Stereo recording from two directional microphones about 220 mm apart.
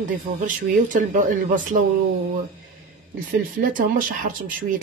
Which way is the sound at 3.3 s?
40° right (ahead or behind).